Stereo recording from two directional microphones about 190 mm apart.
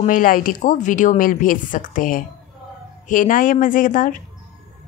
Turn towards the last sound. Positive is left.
turn(degrees=45)  # may be behind; listen again after turning